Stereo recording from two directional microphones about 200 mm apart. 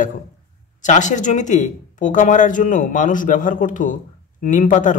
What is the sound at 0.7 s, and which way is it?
Speech, 40° left (ahead or behind).